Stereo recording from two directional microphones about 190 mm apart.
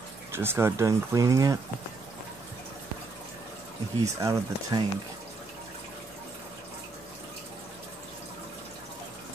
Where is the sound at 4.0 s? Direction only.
15° right (ahead or behind).